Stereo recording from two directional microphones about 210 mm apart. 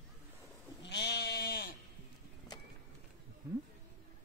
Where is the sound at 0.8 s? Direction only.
55° left (ahead or behind).